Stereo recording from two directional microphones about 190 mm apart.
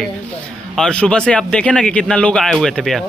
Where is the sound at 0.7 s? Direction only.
5° left (ahead or behind).